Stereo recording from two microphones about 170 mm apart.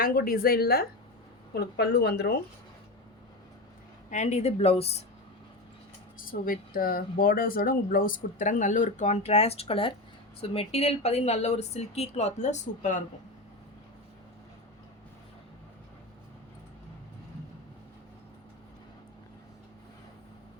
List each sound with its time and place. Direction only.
0.0 s a woman's voice: 60° left (ahead or behind)
1.5 s speech: 75° left (ahead or behind)
4.1 s speech: 45° left (ahead or behind)
6.1 s speech: 55° left (ahead or behind)